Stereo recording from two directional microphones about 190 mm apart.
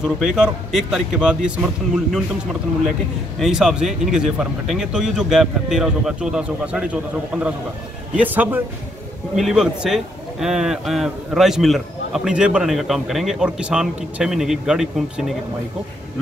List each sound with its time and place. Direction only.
0.0 s a man's voice: 5° right (ahead or behind)
3.3 s a man's voice: centre (ahead or behind)